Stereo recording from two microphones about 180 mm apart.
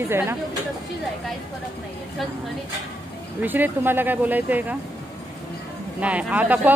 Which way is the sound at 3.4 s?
10° right (ahead or behind).